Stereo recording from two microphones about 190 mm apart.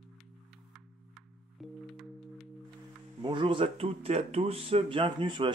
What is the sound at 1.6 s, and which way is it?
Music, centre (ahead or behind).